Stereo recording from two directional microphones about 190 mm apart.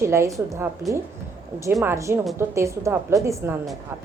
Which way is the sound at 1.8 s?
15° right (ahead or behind).